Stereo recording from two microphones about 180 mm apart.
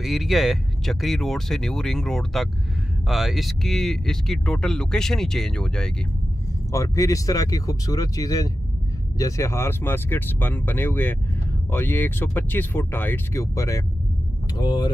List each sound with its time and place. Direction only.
0.0 s speech: centre (ahead or behind)
6.7 s speech: 20° left (ahead or behind)